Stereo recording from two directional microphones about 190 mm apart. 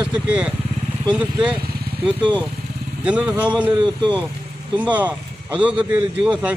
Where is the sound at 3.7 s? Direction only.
20° right (ahead or behind).